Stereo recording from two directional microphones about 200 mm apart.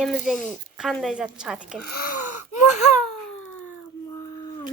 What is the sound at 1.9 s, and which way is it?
Gasp, 45° left (ahead or behind).